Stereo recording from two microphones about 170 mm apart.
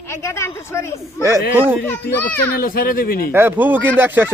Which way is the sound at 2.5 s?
60° left (ahead or behind).